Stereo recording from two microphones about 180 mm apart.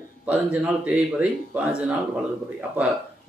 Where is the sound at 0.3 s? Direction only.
5° right (ahead or behind).